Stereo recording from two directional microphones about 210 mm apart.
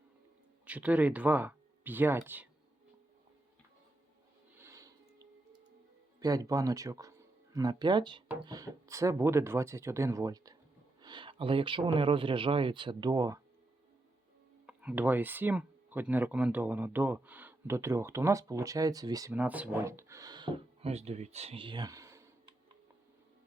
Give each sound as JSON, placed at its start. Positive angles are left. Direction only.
{"t": 0.6, "sound": "speech", "side_deg": -5}
{"t": 4.5, "sound": "music", "side_deg": -15}
{"t": 6.1, "sound": "speech", "side_deg": -15}
{"t": 14.7, "sound": "speech", "side_deg": -5}